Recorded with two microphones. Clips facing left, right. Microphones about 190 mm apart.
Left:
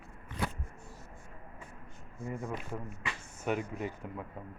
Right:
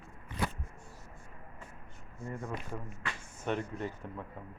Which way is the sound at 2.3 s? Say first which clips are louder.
Left 1 dB; 5° left (ahead or behind).